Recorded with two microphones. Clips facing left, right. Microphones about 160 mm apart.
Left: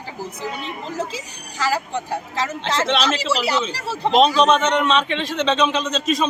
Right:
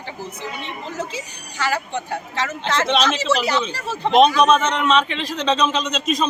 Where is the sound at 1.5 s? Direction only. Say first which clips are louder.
Left 1 dB; 35° left (ahead or behind).